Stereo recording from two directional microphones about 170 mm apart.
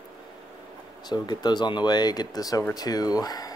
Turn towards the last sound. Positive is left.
turn(degrees=20)  # may be behind; listen again after turning